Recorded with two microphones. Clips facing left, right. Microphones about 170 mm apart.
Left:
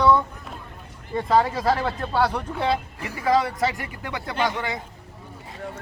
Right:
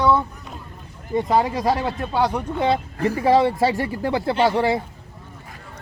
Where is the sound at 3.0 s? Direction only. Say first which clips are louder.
Right 6 dB; 35° right (ahead or behind).